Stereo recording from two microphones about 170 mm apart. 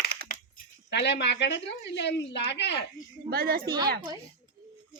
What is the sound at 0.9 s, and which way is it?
A woman's voice, 90° left.